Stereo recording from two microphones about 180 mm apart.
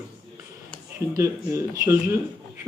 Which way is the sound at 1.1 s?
15° right (ahead or behind).